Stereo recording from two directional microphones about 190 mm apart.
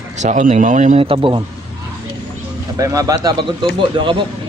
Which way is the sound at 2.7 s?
15° right (ahead or behind).